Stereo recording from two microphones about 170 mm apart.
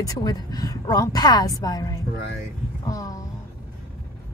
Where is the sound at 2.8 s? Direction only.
20° left (ahead or behind).